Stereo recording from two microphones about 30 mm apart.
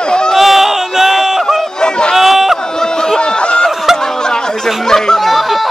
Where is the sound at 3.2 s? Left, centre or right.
Left.